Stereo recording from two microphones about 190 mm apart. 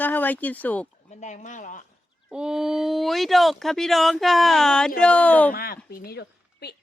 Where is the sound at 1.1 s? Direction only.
40° left (ahead or behind).